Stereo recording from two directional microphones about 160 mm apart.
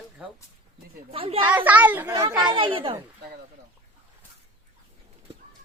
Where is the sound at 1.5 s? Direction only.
10° right (ahead or behind); by 2.9 s 35° right (ahead or behind).